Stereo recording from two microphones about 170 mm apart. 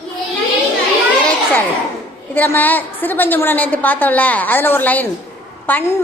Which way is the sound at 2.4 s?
10° left (ahead or behind).